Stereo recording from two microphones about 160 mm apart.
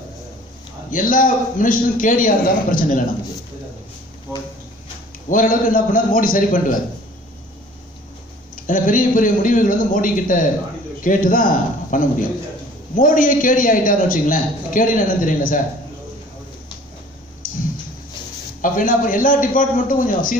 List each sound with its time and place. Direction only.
0.8 s a man's voice: 55° left (ahead or behind)
4.3 s a sound: 15° right (ahead or behind)
5.3 s a man's voice: 55° left (ahead or behind)
8.6 s a man's voice: 55° left (ahead or behind)
18.6 s a man's voice: 55° left (ahead or behind)